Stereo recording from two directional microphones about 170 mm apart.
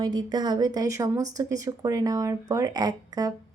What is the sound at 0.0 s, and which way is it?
A woman's voice, 25° right (ahead or behind).